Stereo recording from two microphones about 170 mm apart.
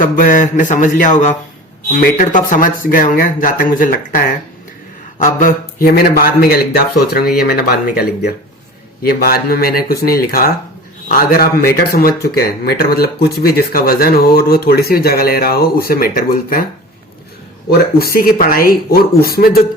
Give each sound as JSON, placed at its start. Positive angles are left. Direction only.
{"t": 0.0, "sound": "speech", "side_deg": 50}
{"t": 5.2, "sound": "speech", "side_deg": 50}
{"t": 17.7, "sound": "speech", "side_deg": 65}